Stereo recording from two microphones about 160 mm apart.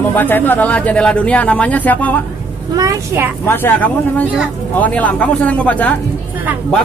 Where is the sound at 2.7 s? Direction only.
20° right (ahead or behind).